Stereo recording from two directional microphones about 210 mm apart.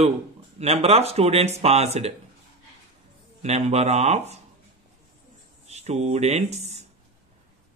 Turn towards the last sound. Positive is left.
turn(degrees=-30)  # may be behind; listen again after turning